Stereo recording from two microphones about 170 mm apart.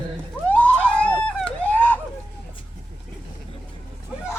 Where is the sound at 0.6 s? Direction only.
10° left (ahead or behind).